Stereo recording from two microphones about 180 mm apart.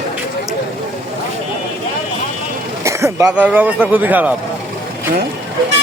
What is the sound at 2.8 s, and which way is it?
A man's voice, 15° right (ahead or behind).